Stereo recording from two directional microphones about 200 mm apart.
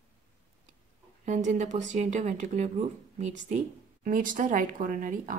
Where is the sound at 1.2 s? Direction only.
40° right (ahead or behind).